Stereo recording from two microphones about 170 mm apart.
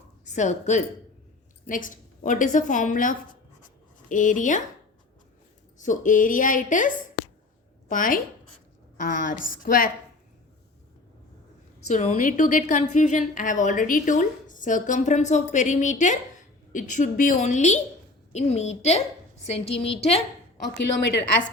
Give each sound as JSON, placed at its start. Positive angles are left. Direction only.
{"t": 0.3, "sound": "a woman's voice", "side_deg": 45}
{"t": 5.8, "sound": "a woman's voice", "side_deg": 50}
{"t": 11.9, "sound": "a woman's voice", "side_deg": 45}